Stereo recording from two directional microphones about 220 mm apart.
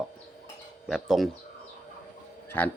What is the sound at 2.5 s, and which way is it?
Speech, 10° left (ahead or behind).